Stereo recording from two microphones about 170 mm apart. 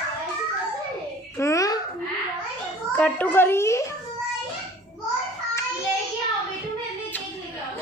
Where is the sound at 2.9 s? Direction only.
10° left (ahead or behind).